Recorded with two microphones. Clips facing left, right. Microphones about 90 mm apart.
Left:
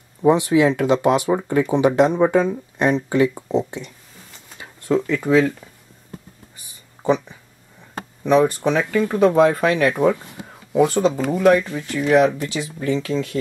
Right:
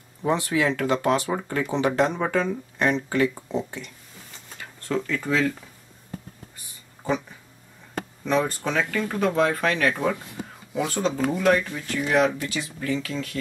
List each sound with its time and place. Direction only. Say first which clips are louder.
0.2 s speech: left 8 dB; 15° left (ahead or behind)
8.2 s speech: left 8 dB; 15° left (ahead or behind)